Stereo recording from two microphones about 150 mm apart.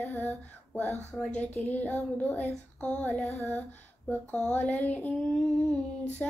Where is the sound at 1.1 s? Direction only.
10° left (ahead or behind).